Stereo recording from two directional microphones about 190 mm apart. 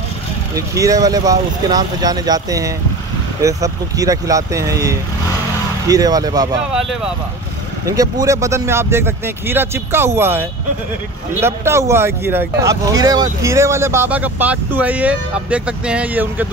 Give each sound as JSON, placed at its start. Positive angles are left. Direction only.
{"t": 0.6, "sound": "speech", "side_deg": -15}
{"t": 6.7, "sound": "speech", "side_deg": 0}
{"t": 7.8, "sound": "speech", "side_deg": -20}
{"t": 11.4, "sound": "speech", "side_deg": -15}